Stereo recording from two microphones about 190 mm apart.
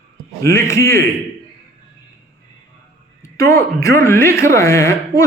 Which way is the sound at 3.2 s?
15° left (ahead or behind).